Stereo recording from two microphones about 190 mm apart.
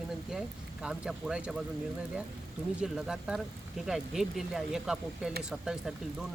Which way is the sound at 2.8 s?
5° right (ahead or behind).